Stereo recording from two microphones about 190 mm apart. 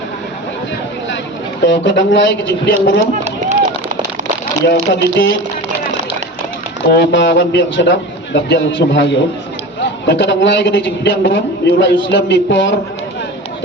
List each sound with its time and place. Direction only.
1.6 s a man's voice: 70° left (ahead or behind)
4.6 s speech: 65° left (ahead or behind)
6.9 s a man's voice: 65° left (ahead or behind)